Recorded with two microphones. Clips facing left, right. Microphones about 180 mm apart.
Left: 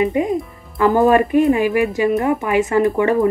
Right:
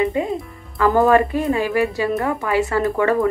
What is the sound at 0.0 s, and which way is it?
Speech, 15° left (ahead or behind).